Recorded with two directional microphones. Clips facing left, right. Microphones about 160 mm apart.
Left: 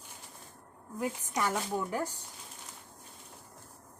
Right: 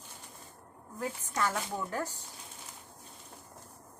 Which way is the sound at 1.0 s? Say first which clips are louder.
Left 1 dB; 15° left (ahead or behind).